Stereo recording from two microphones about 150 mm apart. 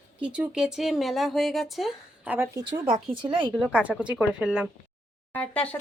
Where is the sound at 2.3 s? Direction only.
15° right (ahead or behind).